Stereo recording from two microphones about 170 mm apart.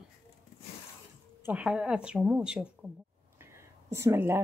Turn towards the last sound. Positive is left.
turn(degrees=-15)  # may be behind; listen again after turning